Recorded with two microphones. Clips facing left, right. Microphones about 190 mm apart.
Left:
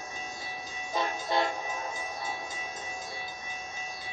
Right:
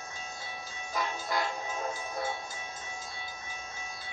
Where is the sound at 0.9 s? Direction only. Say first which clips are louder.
Left 3 dB; 25° left (ahead or behind).